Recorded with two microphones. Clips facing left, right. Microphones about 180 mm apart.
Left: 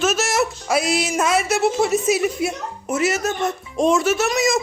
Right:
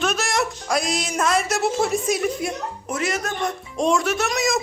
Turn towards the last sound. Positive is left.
turn(degrees=0)  # may be behind; listen again after turning